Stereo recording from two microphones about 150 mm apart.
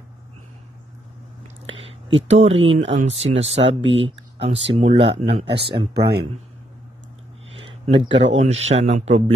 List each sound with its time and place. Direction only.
1.7 s speech: 40° right (ahead or behind)
7.5 s a sound: 40° right (ahead or behind)
8.4 s speech: 45° right (ahead or behind)